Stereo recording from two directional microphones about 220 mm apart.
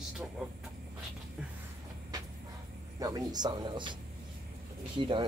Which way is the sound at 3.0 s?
15° right (ahead or behind).